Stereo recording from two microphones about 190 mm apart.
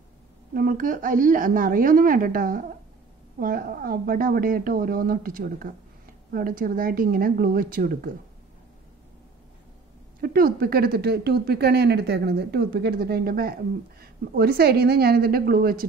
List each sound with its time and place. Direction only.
0.6 s a woman's voice: 45° right (ahead or behind)
10.2 s speech: 50° right (ahead or behind)